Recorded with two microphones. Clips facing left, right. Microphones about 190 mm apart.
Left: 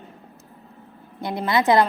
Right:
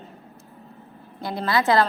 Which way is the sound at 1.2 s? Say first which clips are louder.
Left 2 dB; 20° left (ahead or behind).